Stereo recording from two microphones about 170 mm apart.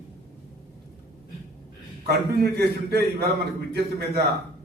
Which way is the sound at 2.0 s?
70° right (ahead or behind).